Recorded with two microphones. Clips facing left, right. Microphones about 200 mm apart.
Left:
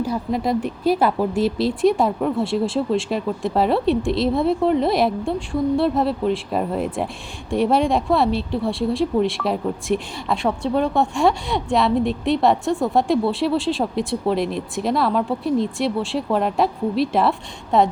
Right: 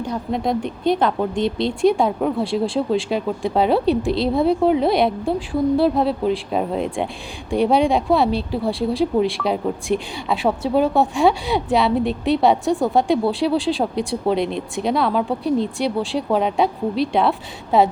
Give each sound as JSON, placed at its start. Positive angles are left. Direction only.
{"t": 0.0, "sound": "speech", "side_deg": 5}